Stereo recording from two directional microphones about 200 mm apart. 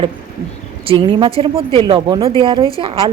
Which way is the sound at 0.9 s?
25° right (ahead or behind).